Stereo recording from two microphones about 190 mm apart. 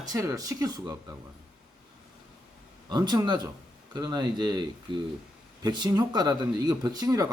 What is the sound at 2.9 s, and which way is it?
Speech, 20° right (ahead or behind).